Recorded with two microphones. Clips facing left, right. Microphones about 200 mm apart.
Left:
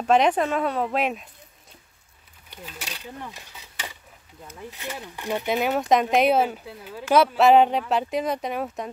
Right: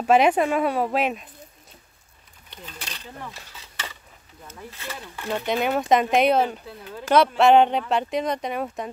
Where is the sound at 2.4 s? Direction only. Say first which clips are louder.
Left 1 dB; 5° left (ahead or behind).